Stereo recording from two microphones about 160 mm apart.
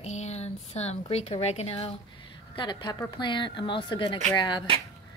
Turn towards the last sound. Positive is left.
turn(degrees=30)  # may be behind; listen again after turning